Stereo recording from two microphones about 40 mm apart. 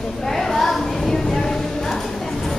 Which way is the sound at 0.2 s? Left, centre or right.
Centre.